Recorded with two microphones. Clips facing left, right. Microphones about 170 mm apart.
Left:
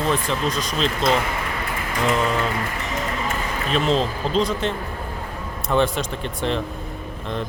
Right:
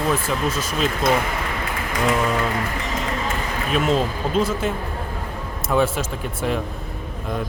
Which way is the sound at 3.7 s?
5° right (ahead or behind).